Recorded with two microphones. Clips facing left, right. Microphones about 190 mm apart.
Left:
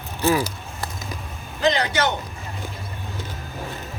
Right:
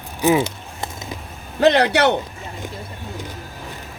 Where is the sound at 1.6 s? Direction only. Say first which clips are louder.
Right 6 dB; 65° right (ahead or behind).